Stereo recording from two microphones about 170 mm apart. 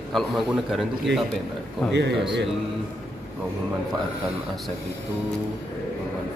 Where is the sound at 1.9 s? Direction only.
90° right.